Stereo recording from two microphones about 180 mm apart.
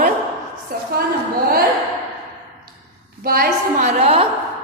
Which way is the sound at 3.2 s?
55° right (ahead or behind).